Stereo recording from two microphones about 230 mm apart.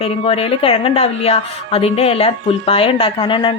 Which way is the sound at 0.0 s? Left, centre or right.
Left.